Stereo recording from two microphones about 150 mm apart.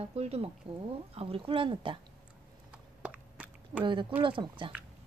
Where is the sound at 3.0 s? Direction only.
10° right (ahead or behind).